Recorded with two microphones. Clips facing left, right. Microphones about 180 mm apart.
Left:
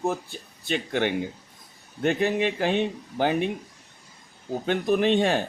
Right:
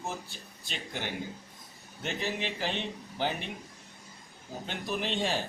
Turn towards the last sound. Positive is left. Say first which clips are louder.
# left 10 dB
turn(degrees=60)  # may be behind; listen again after turning